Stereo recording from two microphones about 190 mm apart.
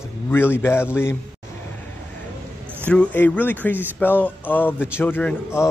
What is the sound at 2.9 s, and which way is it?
A man's voice, 5° left (ahead or behind).